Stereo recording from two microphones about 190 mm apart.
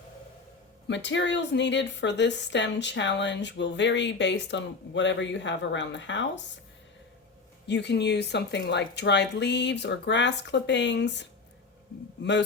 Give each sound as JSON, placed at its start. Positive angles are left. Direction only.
{"t": 0.9, "sound": "a woman's voice", "side_deg": 70}
{"t": 7.7, "sound": "speech", "side_deg": 65}